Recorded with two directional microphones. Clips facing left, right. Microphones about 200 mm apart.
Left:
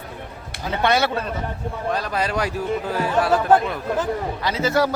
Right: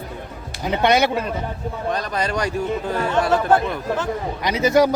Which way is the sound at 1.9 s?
5° left (ahead or behind).